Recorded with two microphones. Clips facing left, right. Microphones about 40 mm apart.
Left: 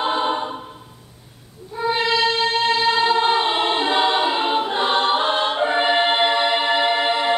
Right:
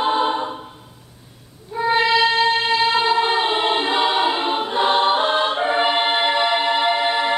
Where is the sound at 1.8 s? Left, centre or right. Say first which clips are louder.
Right 3 dB; centre.